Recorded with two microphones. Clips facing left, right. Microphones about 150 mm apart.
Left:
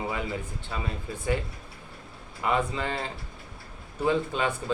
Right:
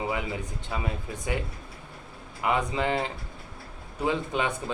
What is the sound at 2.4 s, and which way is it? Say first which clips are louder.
Speech: right 1 dB; 15° right (ahead or behind).